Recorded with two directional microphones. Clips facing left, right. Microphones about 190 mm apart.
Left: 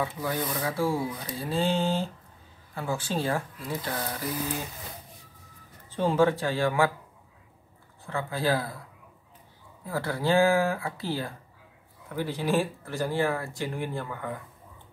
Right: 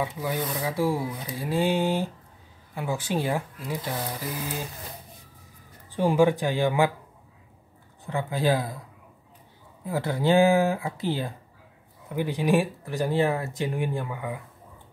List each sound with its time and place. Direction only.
0.0 s speech: 15° right (ahead or behind)
5.9 s speech: 15° right (ahead or behind)
8.0 s speech: 15° right (ahead or behind)
9.8 s speech: 20° right (ahead or behind)